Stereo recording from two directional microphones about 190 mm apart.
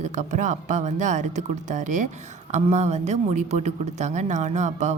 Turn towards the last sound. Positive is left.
turn(degrees=-40)  # may be behind; listen again after turning